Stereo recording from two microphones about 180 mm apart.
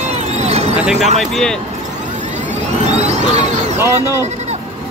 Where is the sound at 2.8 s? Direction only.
40° right (ahead or behind).